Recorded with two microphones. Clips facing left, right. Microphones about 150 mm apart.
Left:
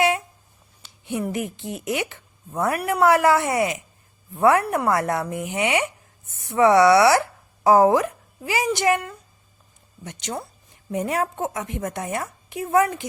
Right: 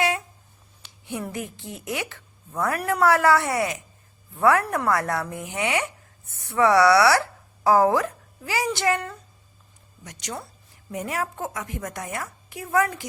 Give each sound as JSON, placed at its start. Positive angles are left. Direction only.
{"t": 1.3, "sound": "a woman's voice", "side_deg": 20}
{"t": 10.0, "sound": "a woman's voice", "side_deg": 25}